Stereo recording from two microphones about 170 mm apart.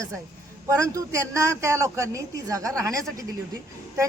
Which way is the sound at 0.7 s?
20° right (ahead or behind).